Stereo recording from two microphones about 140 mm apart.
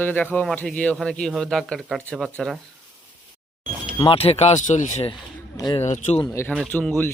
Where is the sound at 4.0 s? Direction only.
45° left (ahead or behind); by 5.0 s 60° left (ahead or behind).